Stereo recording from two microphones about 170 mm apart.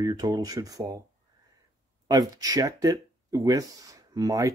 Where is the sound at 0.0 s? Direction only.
20° right (ahead or behind).